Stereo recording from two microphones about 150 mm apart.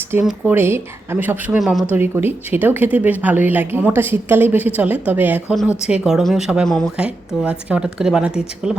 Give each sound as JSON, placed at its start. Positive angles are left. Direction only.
{"t": 0.3, "sound": "a woman's voice", "side_deg": -15}
{"t": 2.0, "sound": "a woman's voice", "side_deg": -15}
{"t": 6.9, "sound": "a woman's voice", "side_deg": -5}